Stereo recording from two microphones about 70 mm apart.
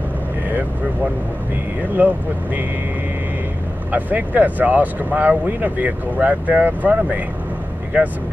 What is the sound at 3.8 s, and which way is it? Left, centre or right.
Speech, right.